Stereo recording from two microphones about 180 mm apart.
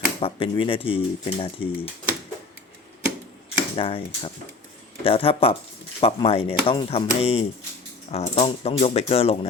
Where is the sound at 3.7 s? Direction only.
30° left (ahead or behind).